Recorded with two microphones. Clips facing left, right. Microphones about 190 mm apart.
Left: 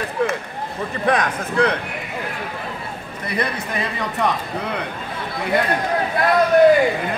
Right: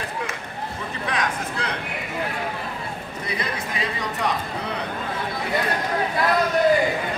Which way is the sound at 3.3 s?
60° left (ahead or behind).